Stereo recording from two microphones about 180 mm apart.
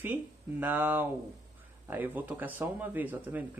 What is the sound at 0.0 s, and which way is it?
A man's voice, 10° right (ahead or behind).